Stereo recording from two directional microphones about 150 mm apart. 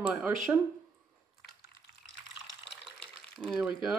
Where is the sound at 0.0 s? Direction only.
10° right (ahead or behind).